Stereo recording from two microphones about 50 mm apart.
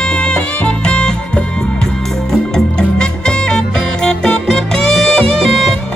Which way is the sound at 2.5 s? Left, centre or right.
Centre.